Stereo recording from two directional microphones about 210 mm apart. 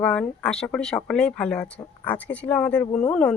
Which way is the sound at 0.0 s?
5° left (ahead or behind).